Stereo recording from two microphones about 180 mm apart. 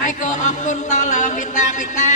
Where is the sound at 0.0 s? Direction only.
45° left (ahead or behind).